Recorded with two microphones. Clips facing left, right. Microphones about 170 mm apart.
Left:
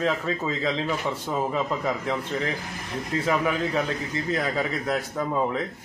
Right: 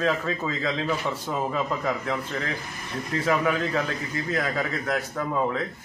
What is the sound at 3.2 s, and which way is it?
A man's voice, 10° left (ahead or behind).